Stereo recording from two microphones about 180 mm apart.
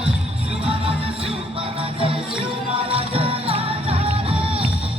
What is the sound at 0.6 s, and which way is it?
Music, 35° right (ahead or behind).